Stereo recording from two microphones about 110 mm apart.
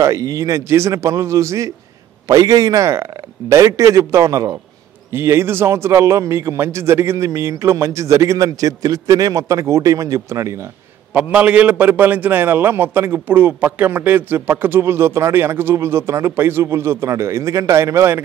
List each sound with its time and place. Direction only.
0.0 s a man's voice: 30° right (ahead or behind)
11.3 s a man's voice: 15° right (ahead or behind)